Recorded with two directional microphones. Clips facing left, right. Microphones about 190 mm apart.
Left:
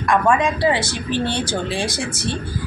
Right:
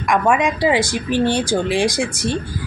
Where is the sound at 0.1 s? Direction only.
15° right (ahead or behind).